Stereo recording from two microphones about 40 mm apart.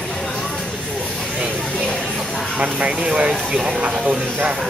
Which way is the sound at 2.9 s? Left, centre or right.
Centre.